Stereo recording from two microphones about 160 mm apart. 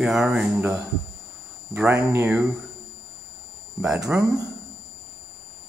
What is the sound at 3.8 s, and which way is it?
Speech, 5° right (ahead or behind).